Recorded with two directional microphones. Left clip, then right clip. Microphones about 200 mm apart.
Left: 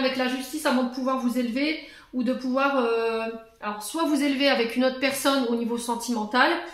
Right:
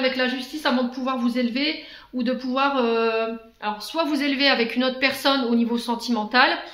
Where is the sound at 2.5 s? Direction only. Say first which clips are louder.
Right 2 dB; 40° right (ahead or behind).